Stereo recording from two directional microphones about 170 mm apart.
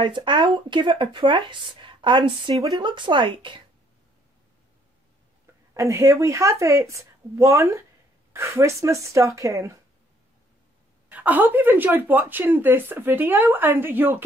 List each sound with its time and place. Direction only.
0.0 s speech: 30° right (ahead or behind)
5.8 s speech: 15° right (ahead or behind)
11.1 s speech: 10° right (ahead or behind)